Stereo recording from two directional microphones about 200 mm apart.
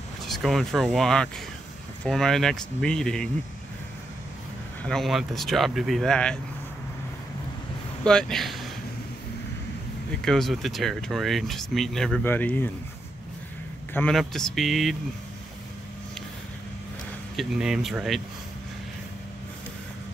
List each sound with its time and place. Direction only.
0.2 s speech: centre (ahead or behind)
4.8 s speech: centre (ahead or behind)
8.0 s speech: 5° left (ahead or behind)
10.2 s speech: centre (ahead or behind)
13.9 s speech: 5° left (ahead or behind)
17.4 s speech: centre (ahead or behind)